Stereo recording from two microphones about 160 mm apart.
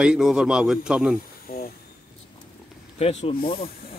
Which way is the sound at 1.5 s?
70° left (ahead or behind).